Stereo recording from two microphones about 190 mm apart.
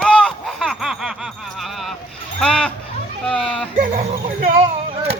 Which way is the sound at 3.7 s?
40° right (ahead or behind).